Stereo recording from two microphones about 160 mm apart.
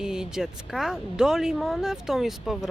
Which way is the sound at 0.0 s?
5° right (ahead or behind).